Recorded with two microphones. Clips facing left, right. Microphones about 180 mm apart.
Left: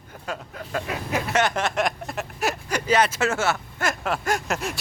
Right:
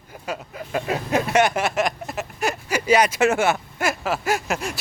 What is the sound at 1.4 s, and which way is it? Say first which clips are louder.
Speech: right 2 dB; 10° right (ahead or behind).